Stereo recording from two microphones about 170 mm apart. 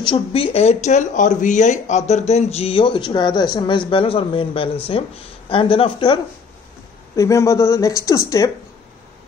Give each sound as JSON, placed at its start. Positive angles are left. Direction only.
{"t": 0.0, "sound": "speech", "side_deg": 30}
{"t": 7.2, "sound": "speech", "side_deg": 15}